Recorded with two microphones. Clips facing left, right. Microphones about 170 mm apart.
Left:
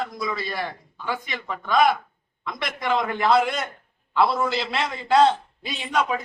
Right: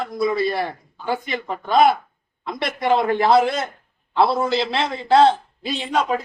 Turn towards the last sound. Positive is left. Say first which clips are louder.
# right 3 dB
turn(degrees=-35)  # may be behind; listen again after turning